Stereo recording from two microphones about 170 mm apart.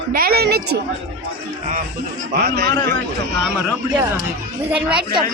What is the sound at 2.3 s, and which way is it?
Speech, 70° right (ahead or behind).